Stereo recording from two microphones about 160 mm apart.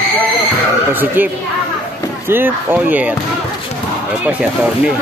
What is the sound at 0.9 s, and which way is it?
Speech, 10° right (ahead or behind).